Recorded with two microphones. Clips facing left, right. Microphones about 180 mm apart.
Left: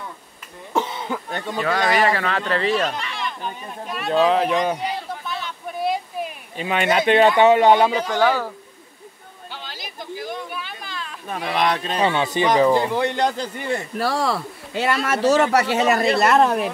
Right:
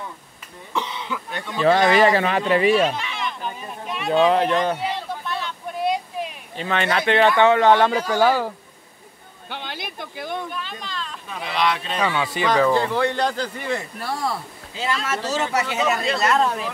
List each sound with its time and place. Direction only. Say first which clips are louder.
0.7 s cough: left 4 dB; 45° left (ahead or behind)
1.6 s speech: right 4 dB; 25° right (ahead or behind)
2.9 s a sound: right 1 dB; centre (ahead or behind)
6.6 s speech: left 3 dB; 15° left (ahead or behind)
8.1 s speech: right 1 dB; 10° right (ahead or behind)
9.5 s a sound: right 5 dB; 60° right (ahead or behind)
10.5 s a sound: right 1 dB; 10° left (ahead or behind)
11.2 s speech: left 2 dB; 50° left (ahead or behind)
12.0 s speech: left 3 dB; 25° left (ahead or behind)
13.9 s speech: left 5 dB; 90° left; by 16.7 s 60° left (ahead or behind)